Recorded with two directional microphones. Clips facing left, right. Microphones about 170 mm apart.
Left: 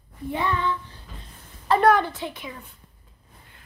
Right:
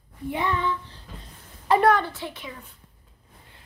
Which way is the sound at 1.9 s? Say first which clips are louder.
Left 2 dB; 15° left (ahead or behind).